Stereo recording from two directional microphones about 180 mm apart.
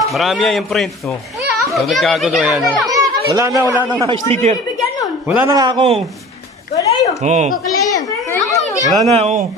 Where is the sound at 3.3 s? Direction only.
20° right (ahead or behind).